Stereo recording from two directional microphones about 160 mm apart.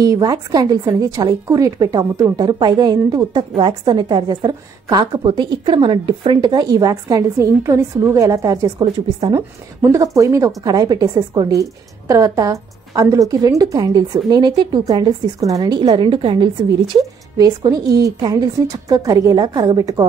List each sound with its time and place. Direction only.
0.0 s a woman's voice: 25° right (ahead or behind)
9.8 s a woman's voice: 15° right (ahead or behind)